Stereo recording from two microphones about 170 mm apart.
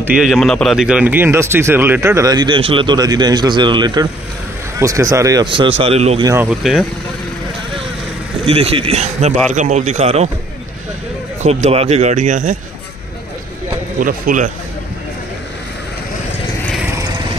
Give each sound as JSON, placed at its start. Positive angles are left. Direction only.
{"t": 0.0, "sound": "a man's voice", "side_deg": -5}
{"t": 6.2, "sound": "speech", "side_deg": -15}
{"t": 6.6, "sound": "speech", "side_deg": 0}
{"t": 8.5, "sound": "a man's voice", "side_deg": -35}
{"t": 11.4, "sound": "speech", "side_deg": -40}
{"t": 13.9, "sound": "speech", "side_deg": -55}